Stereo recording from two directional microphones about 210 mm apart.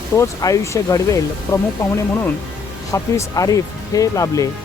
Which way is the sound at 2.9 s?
15° left (ahead or behind).